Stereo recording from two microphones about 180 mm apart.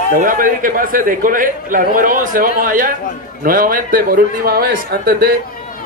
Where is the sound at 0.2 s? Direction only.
50° right (ahead or behind).